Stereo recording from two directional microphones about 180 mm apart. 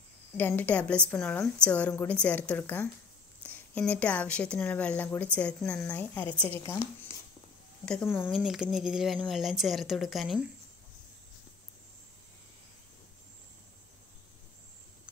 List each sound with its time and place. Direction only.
0.4 s speech: 10° left (ahead or behind)
7.1 s a sound: 15° left (ahead or behind)
7.8 s speech: 5° left (ahead or behind)
8.4 s speech: 5° right (ahead or behind)